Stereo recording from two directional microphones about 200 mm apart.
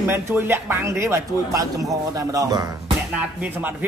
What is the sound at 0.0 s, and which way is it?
A man's voice, 10° right (ahead or behind).